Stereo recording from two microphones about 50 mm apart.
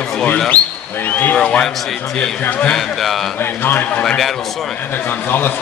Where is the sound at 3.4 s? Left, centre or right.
Left.